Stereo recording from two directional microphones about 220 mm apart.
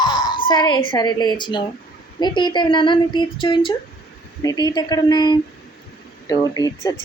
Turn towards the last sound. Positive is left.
turn(degrees=15)  # may be behind; listen again after turning